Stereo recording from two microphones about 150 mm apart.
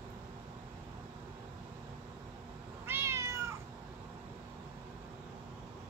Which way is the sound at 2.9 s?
15° right (ahead or behind).